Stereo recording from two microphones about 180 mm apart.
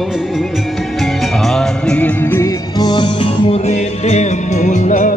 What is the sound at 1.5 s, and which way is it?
Music, 5° left (ahead or behind).